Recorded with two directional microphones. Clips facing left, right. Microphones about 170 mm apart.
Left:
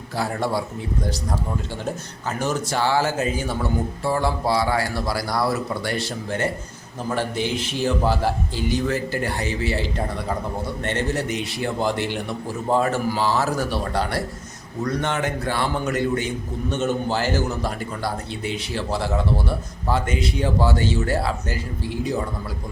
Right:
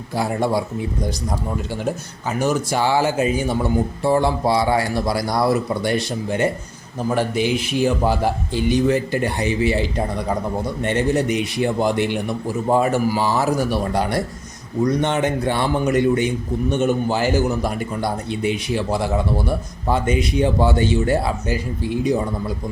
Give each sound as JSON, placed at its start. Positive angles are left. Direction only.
{"t": 0.2, "sound": "a man's voice", "side_deg": -15}
{"t": 2.4, "sound": "a man's voice", "side_deg": -10}